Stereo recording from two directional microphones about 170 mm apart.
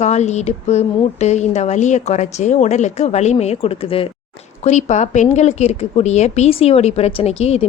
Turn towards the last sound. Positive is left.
turn(degrees=40)  # may be behind; listen again after turning